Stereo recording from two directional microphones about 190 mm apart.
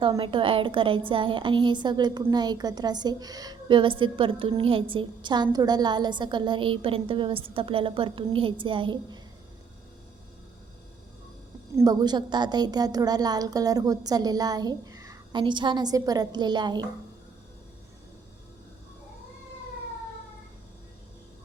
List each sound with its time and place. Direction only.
0.0 s a woman's voice: 25° right (ahead or behind)
11.8 s a woman's voice: 20° right (ahead or behind)